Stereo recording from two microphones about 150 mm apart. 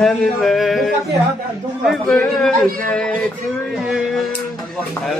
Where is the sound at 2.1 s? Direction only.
5° left (ahead or behind).